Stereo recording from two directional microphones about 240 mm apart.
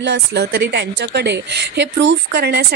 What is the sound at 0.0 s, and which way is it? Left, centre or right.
A woman's voice, right.